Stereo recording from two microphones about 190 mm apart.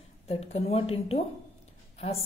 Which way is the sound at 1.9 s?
30° left (ahead or behind).